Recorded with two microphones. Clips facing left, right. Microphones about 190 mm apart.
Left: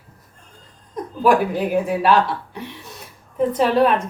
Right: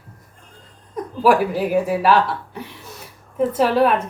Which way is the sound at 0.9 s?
5° right (ahead or behind).